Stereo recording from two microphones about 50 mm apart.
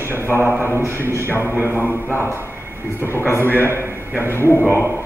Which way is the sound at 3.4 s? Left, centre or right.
Right.